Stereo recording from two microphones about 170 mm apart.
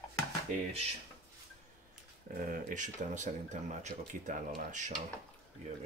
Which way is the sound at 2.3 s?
55° right (ahead or behind).